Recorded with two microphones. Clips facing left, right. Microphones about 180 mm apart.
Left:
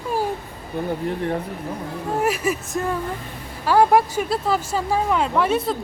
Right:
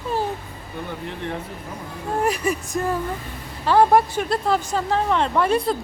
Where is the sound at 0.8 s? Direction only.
40° left (ahead or behind).